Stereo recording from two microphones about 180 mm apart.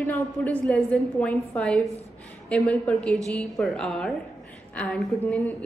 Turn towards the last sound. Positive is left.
turn(degrees=5)  # may be behind; listen again after turning